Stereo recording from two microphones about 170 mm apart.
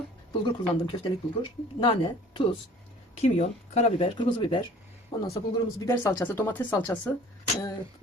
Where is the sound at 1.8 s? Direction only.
30° left (ahead or behind).